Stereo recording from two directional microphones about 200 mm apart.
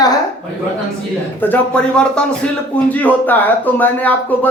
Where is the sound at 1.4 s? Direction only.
10° left (ahead or behind).